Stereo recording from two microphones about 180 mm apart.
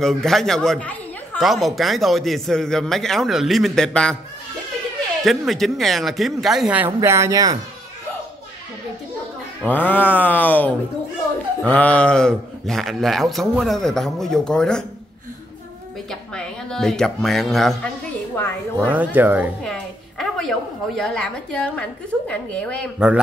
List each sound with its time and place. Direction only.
0.0 s a man's voice: centre (ahead or behind)
5.2 s a man's voice: centre (ahead or behind)
7.0 s speech: 15° right (ahead or behind)
9.6 s a sound: 10° left (ahead or behind)
11.6 s a man's voice: 5° left (ahead or behind)
16.1 s speech: 5° left (ahead or behind)
18.3 s a sound: 10° left (ahead or behind)
18.9 s speech: 10° right (ahead or behind)
19.6 s a woman's voice: 5° left (ahead or behind)
22.3 s a sound: 5° left (ahead or behind)
22.9 s a man's voice: 5° right (ahead or behind)